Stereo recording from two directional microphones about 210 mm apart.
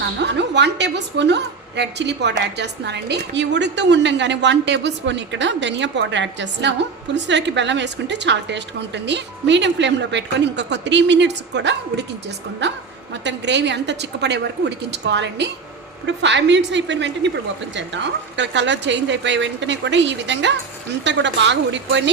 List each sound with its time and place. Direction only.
0.2 s a woman's voice: 55° right (ahead or behind)